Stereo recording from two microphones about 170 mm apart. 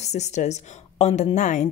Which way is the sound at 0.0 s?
40° left (ahead or behind).